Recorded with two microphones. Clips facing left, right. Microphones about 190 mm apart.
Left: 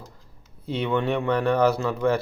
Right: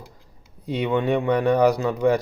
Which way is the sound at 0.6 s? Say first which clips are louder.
Right 2 dB; 15° right (ahead or behind).